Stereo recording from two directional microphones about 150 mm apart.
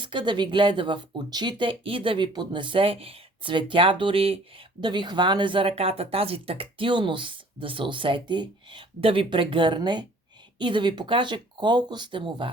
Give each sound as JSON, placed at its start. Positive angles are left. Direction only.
{"t": 0.0, "sound": "speech", "side_deg": -30}